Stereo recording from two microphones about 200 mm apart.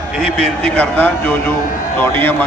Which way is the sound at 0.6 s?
5° left (ahead or behind).